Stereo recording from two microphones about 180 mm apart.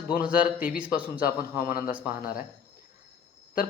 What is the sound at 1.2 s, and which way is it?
Speech, 55° left (ahead or behind).